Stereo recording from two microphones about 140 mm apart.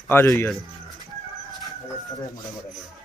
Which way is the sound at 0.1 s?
15° left (ahead or behind).